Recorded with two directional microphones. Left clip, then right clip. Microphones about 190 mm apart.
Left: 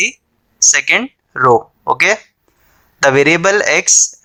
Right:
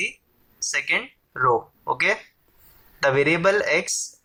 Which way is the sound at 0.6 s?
45° left (ahead or behind).